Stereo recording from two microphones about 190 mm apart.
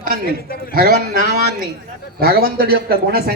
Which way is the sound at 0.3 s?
55° left (ahead or behind).